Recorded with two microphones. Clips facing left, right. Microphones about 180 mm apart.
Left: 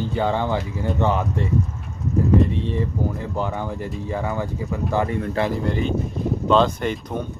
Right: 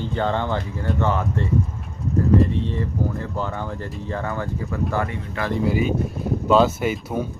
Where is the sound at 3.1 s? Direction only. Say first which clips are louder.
Left 1 dB; 15° left (ahead or behind).